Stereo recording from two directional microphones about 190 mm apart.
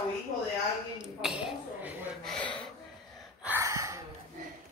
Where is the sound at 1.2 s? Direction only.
5° right (ahead or behind).